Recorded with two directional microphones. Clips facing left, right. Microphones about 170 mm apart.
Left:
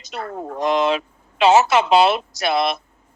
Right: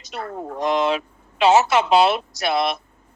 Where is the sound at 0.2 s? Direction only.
85° left.